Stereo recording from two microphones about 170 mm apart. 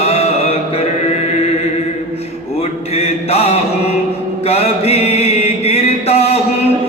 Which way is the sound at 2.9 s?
35° left (ahead or behind).